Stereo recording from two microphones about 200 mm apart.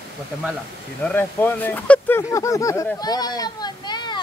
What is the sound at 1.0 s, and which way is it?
Speech, 10° left (ahead or behind).